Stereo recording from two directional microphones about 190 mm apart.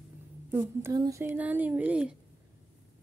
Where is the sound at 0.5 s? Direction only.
15° right (ahead or behind).